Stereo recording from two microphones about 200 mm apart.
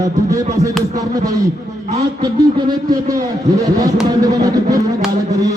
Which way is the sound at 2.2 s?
20° right (ahead or behind).